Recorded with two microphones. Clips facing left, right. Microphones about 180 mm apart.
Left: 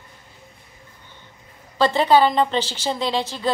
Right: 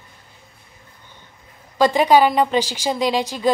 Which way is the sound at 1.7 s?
15° right (ahead or behind).